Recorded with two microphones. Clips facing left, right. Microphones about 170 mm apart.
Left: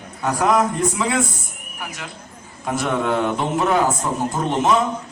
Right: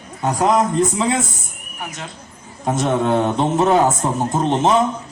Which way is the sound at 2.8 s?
30° right (ahead or behind).